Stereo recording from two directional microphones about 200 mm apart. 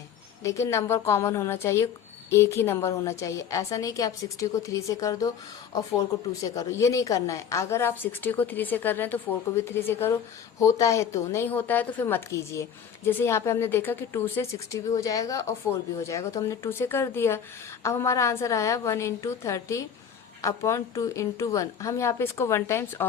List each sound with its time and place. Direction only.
0.4 s a woman's voice: 15° left (ahead or behind)